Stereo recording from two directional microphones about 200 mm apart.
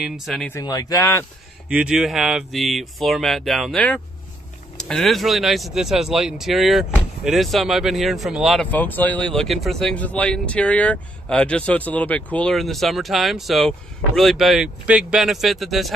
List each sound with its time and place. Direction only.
0.0 s speech: centre (ahead or behind)
0.5 s speech: 15° left (ahead or behind)
1.7 s speech: 5° right (ahead or behind)